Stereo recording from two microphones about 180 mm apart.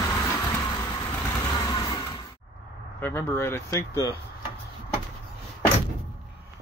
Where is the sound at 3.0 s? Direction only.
10° left (ahead or behind).